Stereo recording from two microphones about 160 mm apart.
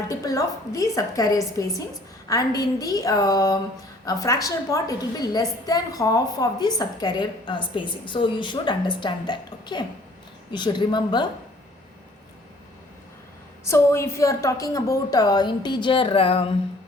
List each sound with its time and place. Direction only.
0.1 s a woman's voice: 20° left (ahead or behind)
13.7 s a woman's voice: 15° left (ahead or behind); by 16.6 s 35° left (ahead or behind)